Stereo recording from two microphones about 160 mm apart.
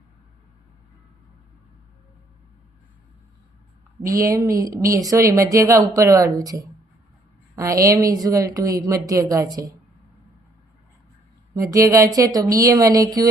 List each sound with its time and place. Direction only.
4.1 s a woman's voice: 20° right (ahead or behind)
11.7 s a woman's voice: 20° right (ahead or behind)